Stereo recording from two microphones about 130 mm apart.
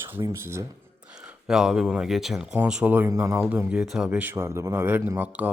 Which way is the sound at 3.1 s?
25° right (ahead or behind).